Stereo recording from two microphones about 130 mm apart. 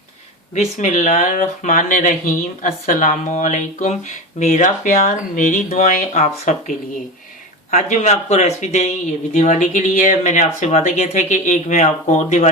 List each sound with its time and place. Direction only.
0.5 s speech: 70° left (ahead or behind)
6.2 s a man's voice: 60° left (ahead or behind)